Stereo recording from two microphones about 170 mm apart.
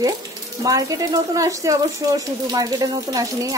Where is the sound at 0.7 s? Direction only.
20° right (ahead or behind).